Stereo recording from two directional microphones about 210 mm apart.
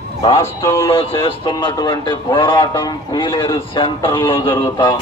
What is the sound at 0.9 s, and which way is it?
A man's voice, 25° left (ahead or behind).